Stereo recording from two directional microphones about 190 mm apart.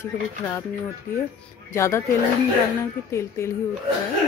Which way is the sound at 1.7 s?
15° left (ahead or behind).